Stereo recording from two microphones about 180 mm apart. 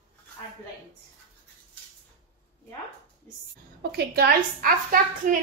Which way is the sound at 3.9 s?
60° right (ahead or behind).